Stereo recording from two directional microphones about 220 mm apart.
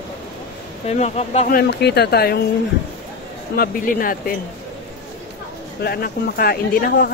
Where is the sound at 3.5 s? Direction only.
40° left (ahead or behind).